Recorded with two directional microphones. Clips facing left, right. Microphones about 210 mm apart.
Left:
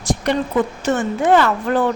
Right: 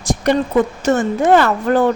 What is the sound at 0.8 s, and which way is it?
A woman's voice, 40° right (ahead or behind).